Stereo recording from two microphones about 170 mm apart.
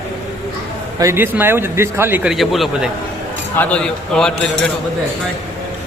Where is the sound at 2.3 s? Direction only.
Centre (ahead or behind).